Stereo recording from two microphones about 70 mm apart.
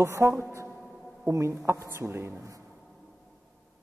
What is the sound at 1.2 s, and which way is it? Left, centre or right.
A man's voice, right.